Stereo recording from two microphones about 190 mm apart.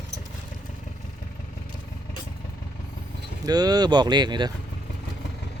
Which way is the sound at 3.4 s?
20° right (ahead or behind).